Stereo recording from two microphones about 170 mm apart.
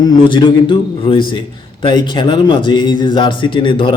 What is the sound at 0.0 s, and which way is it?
Speech, 25° left (ahead or behind).